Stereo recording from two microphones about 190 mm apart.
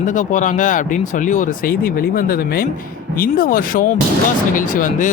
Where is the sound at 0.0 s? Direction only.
40° left (ahead or behind).